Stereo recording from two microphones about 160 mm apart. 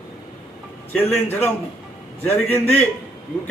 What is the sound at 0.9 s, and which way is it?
A man's voice, 10° left (ahead or behind).